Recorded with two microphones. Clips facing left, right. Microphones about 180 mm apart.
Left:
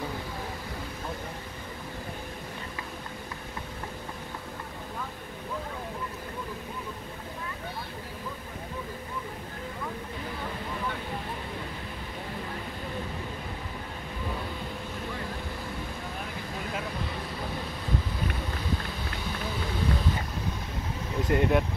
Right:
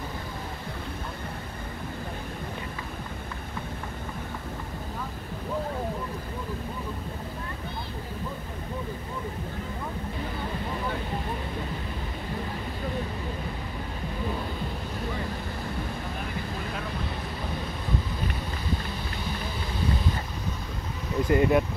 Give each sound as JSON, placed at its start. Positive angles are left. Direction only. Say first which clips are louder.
{"t": 21.3, "sound": "speech", "louder": "right 3 dB", "side_deg": 0}